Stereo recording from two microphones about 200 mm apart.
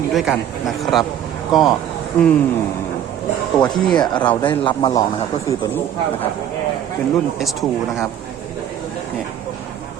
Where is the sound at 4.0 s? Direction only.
20° left (ahead or behind).